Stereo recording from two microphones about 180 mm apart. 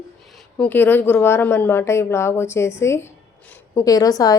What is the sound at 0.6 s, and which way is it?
A woman's voice, 10° left (ahead or behind).